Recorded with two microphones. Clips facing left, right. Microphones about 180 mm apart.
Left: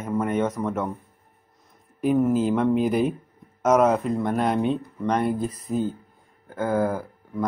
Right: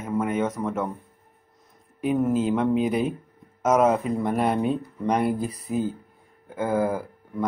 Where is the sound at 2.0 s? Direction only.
Centre (ahead or behind).